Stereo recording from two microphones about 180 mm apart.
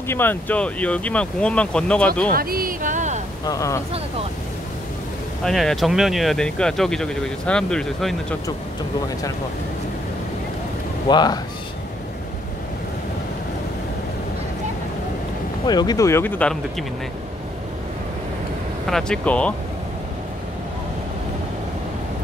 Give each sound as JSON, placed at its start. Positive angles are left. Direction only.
{"t": 0.1, "sound": "speech", "side_deg": 10}
{"t": 2.3, "sound": "a sound", "side_deg": -55}
{"t": 3.4, "sound": "speech", "side_deg": 20}
{"t": 5.4, "sound": "speech", "side_deg": 0}
{"t": 11.1, "sound": "a man's voice", "side_deg": 25}
{"t": 15.6, "sound": "speech", "side_deg": 25}
{"t": 18.9, "sound": "speech", "side_deg": 5}